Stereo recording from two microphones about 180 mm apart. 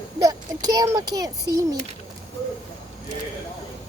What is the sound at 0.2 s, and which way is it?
A child's voice, 20° right (ahead or behind).